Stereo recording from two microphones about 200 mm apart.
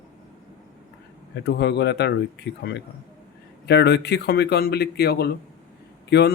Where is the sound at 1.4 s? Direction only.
60° left (ahead or behind).